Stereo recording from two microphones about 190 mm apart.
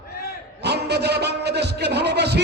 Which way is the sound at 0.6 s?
60° right (ahead or behind).